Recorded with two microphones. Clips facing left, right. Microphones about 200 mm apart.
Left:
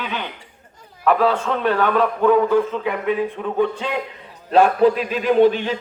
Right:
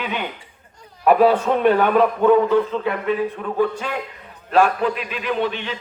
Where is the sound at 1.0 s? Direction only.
20° right (ahead or behind); by 4.7 s 25° left (ahead or behind).